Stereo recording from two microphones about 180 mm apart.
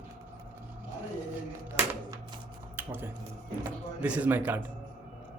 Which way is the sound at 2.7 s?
10° right (ahead or behind).